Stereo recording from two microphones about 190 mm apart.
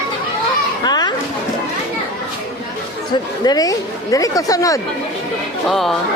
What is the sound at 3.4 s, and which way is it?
Speech, 20° left (ahead or behind).